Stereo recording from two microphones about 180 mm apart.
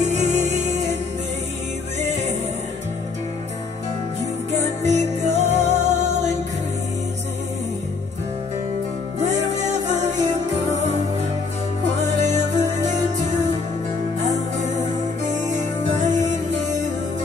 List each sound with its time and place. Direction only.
0.0 s music: 40° right (ahead or behind)
2.0 s music: 40° right (ahead or behind)
4.5 s music: 40° right (ahead or behind)
9.6 s music: 40° right (ahead or behind)
12.0 s music: 40° right (ahead or behind)
15.2 s music: 40° right (ahead or behind)